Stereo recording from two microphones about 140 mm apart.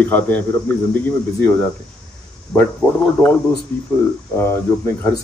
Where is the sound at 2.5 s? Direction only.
5° left (ahead or behind).